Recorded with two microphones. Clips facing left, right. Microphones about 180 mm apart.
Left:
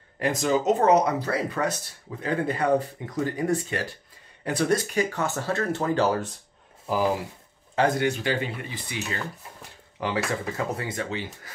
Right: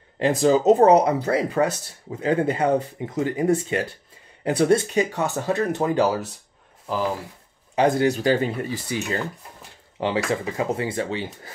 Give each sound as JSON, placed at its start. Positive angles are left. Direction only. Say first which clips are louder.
{"t": 0.2, "sound": "speech", "louder": "right 6 dB", "side_deg": -30}
{"t": 6.9, "sound": "speech", "louder": "left 1 dB", "side_deg": 10}
{"t": 8.0, "sound": "speech", "louder": "right 6 dB", "side_deg": -35}
{"t": 9.9, "sound": "speech", "louder": "right 4 dB", "side_deg": -25}